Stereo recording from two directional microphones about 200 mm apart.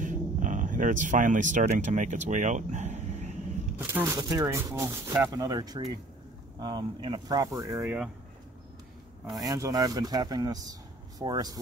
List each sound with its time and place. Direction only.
0.0 s a sound: 40° right (ahead or behind)
3.7 s speech: 10° right (ahead or behind)
7.8 s speech: 5° right (ahead or behind)
9.2 s speech: 15° right (ahead or behind)